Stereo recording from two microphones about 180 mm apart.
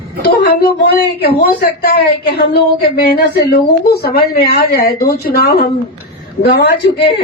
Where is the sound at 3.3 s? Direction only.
60° left (ahead or behind).